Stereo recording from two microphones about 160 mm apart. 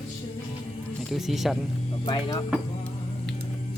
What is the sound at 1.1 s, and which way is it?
Speech, centre (ahead or behind).